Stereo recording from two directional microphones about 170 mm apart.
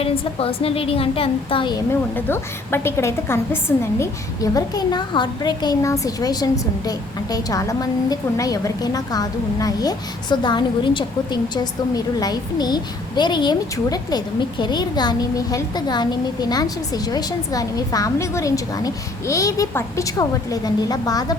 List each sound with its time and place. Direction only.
0.0 s a woman's voice: 35° left (ahead or behind)
1.9 s a woman's voice: 10° left (ahead or behind)